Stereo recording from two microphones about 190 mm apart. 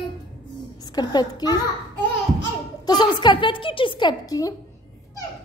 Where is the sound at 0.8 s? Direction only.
20° left (ahead or behind).